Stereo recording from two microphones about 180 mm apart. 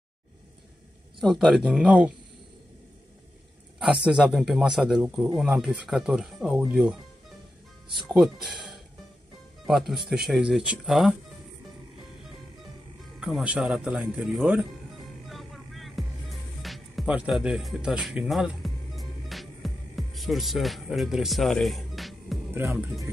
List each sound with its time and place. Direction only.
1.2 s speech: centre (ahead or behind)
3.8 s speech: 5° right (ahead or behind)
13.2 s speech: 5° right (ahead or behind)
15.2 s music: centre (ahead or behind)
22.7 s speech: 15° right (ahead or behind)